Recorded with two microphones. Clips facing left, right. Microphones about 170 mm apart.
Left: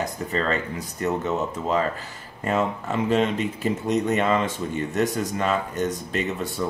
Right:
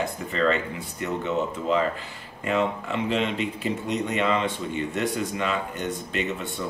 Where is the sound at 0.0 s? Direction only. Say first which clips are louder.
Right 1 dB; 40° left (ahead or behind).